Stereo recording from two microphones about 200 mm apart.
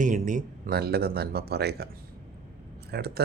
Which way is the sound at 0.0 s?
40° right (ahead or behind).